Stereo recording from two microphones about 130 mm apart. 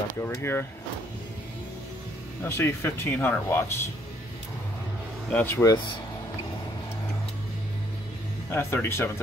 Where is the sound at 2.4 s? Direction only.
20° left (ahead or behind).